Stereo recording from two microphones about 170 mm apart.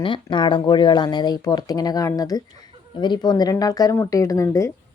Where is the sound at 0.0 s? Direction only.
30° left (ahead or behind).